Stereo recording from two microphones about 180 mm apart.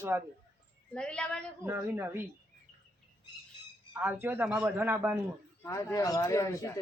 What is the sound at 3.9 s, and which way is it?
Speech, 10° right (ahead or behind).